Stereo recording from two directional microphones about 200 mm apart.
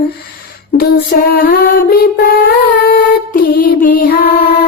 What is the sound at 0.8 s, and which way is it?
Female singing, 50° left (ahead or behind).